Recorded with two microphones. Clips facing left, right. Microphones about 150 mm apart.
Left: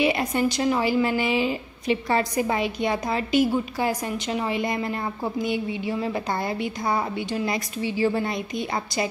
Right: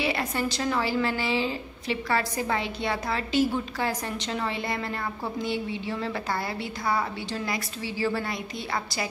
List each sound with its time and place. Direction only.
0.0 s a woman's voice: 20° left (ahead or behind)